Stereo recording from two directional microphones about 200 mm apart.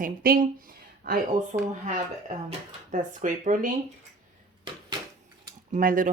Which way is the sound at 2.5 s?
35° right (ahead or behind).